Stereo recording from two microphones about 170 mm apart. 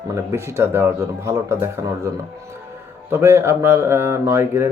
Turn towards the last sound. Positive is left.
turn(degrees=-15)  # may be behind; listen again after turning